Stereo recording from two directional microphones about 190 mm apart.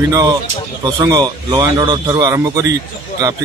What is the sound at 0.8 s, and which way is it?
A man's voice, 20° right (ahead or behind).